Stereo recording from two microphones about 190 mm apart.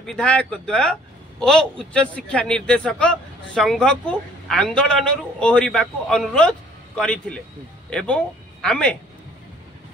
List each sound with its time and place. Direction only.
0.0 s a man's voice: 5° left (ahead or behind)